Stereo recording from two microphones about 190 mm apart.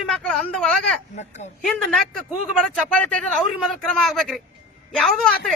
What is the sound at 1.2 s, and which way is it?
Speech, 35° left (ahead or behind).